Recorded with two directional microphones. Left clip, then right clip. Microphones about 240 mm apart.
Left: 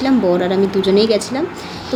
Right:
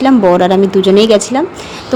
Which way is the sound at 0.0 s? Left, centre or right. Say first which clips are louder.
Right 7 dB; right.